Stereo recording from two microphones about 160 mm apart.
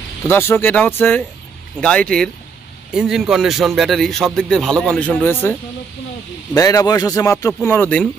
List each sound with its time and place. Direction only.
0.3 s a man's voice: 15° left (ahead or behind)
6.5 s speech: 20° left (ahead or behind)